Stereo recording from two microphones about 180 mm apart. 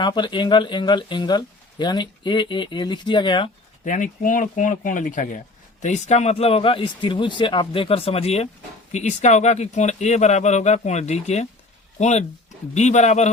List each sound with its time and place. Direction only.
0.0 s speech: 25° left (ahead or behind)
3.8 s a man's voice: 45° left (ahead or behind)